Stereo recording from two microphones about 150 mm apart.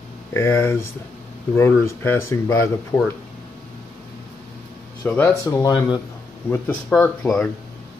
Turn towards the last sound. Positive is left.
turn(degrees=5)  # may be behind; listen again after turning